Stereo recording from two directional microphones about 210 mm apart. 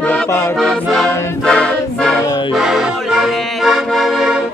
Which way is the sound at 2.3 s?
20° left (ahead or behind).